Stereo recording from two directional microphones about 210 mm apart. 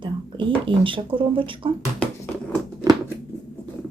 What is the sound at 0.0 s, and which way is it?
Speech, 25° right (ahead or behind).